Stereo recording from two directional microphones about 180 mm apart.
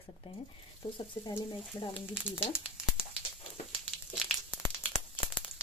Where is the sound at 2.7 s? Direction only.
5° right (ahead or behind).